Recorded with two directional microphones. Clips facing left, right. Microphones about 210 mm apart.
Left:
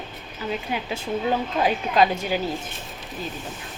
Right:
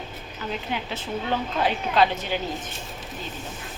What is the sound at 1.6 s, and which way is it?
Speech, 10° left (ahead or behind).